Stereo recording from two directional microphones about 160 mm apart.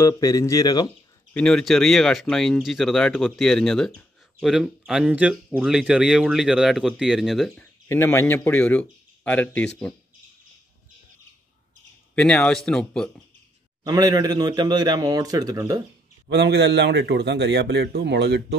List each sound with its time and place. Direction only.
0.0 s speech: 20° left (ahead or behind)
1.3 s speech: 5° left (ahead or behind)
7.9 s speech: 15° left (ahead or behind)
12.2 s speech: 5° left (ahead or behind)
13.8 s a man's voice: 25° right (ahead or behind)
16.3 s a man's voice: 90° right